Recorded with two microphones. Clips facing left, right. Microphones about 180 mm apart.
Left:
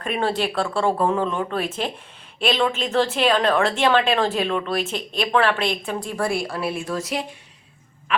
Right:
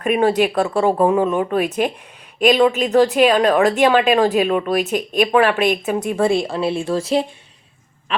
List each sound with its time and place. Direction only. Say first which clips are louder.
0.0 s speech: right 7 dB; 15° right (ahead or behind)